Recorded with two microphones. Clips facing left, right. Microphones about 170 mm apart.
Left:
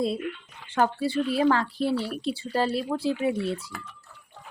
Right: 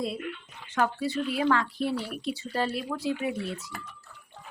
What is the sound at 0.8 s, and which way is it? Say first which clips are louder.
Speech: left 3 dB; 30° left (ahead or behind).